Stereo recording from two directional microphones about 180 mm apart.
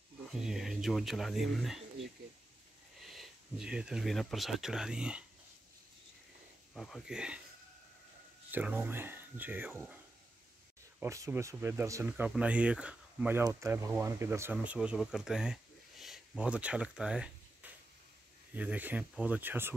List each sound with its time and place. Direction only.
0.3 s speech: centre (ahead or behind)
3.0 s speech: centre (ahead or behind)
6.7 s speech: centre (ahead or behind)
8.5 s speech: 10° right (ahead or behind)
11.0 s speech: 15° right (ahead or behind)
15.1 s a sound: 5° right (ahead or behind)
18.5 s speech: 10° right (ahead or behind)